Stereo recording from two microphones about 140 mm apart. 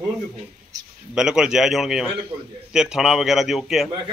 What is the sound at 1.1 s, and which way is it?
A man's voice, 5° right (ahead or behind).